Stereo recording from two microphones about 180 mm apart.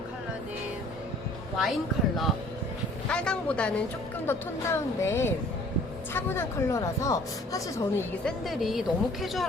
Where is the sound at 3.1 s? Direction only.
5° left (ahead or behind).